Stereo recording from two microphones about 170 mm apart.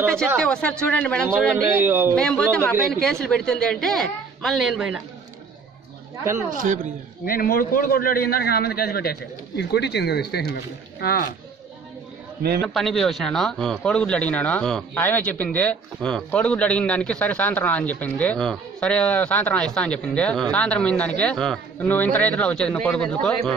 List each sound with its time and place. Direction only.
0.4 s a woman's voice: 5° left (ahead or behind)
1.8 s a man's voice: 10° right (ahead or behind)
2.1 s a woman's voice: 5° left (ahead or behind)
6.5 s speech: 55° right (ahead or behind)
7.2 s a man's voice: 60° left (ahead or behind)
12.6 s speech: centre (ahead or behind)